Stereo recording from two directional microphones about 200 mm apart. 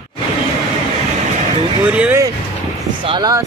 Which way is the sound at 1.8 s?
5° right (ahead or behind).